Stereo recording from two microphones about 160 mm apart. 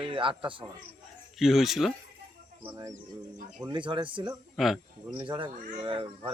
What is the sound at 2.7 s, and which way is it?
Speech, 20° right (ahead or behind).